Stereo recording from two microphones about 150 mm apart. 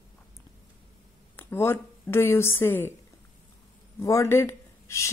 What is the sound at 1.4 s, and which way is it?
Speech, 15° left (ahead or behind).